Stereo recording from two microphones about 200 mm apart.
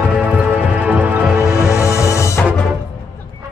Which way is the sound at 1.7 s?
15° left (ahead or behind).